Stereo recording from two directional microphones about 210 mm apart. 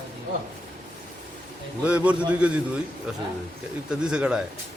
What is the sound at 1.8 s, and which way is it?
Speech, 5° right (ahead or behind).